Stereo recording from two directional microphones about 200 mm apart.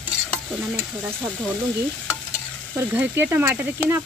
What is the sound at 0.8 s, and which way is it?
Speech, 10° right (ahead or behind).